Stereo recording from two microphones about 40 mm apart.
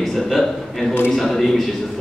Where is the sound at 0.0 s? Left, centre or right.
Centre.